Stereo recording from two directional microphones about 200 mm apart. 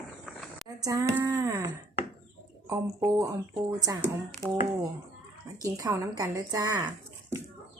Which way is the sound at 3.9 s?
15° right (ahead or behind).